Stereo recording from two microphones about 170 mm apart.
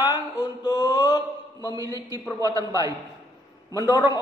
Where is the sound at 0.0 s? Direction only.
25° left (ahead or behind).